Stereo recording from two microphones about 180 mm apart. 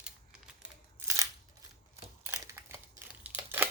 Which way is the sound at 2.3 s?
15° right (ahead or behind).